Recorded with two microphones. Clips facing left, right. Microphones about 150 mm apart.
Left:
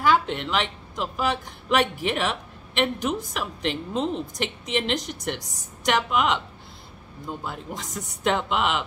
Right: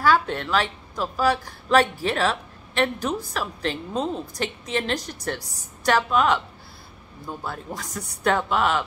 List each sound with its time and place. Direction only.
0.0 s a woman's voice: 20° left (ahead or behind)